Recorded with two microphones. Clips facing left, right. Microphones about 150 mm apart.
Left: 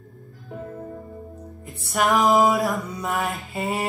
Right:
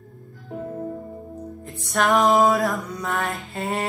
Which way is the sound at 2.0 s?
Centre (ahead or behind).